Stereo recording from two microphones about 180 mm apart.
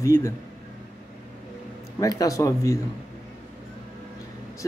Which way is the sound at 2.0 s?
20° left (ahead or behind).